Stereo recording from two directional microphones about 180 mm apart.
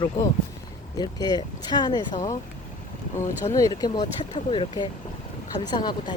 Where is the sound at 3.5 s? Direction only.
20° left (ahead or behind).